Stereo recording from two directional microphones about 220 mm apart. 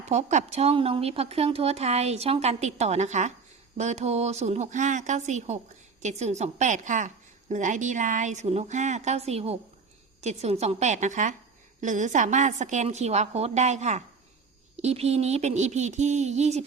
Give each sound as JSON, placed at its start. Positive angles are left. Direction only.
{"t": 0.0, "sound": "a woman's voice", "side_deg": -30}